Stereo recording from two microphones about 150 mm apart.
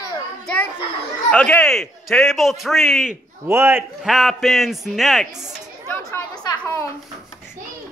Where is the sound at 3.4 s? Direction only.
15° right (ahead or behind).